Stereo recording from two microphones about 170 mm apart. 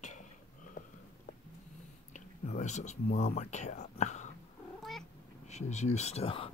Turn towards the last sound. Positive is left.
turn(degrees=35)  # may be behind; listen again after turning